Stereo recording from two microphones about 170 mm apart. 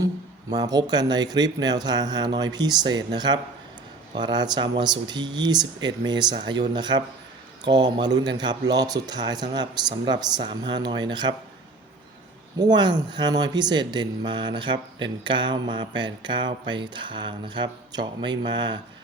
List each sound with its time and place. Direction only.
0.5 s speech: 25° right (ahead or behind)
12.5 s speech: 25° right (ahead or behind)